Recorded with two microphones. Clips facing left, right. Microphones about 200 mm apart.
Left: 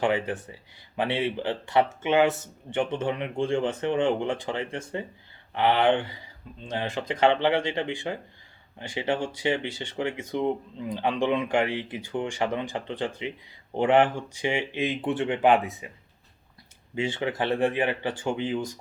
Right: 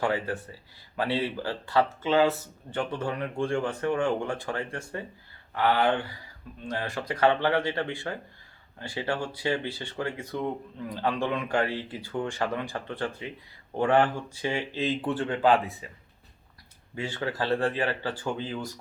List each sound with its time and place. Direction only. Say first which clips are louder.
0.0 s speech: left 3 dB; 20° left (ahead or behind)
16.9 s speech: left 4 dB; 20° left (ahead or behind)